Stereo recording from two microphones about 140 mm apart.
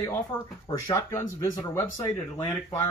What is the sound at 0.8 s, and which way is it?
Speech, 20° left (ahead or behind).